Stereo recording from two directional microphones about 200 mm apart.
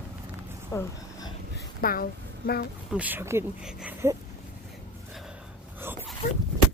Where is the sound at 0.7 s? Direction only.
15° left (ahead or behind).